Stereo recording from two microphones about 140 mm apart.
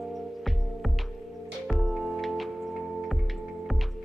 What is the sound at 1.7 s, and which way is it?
Music, centre (ahead or behind).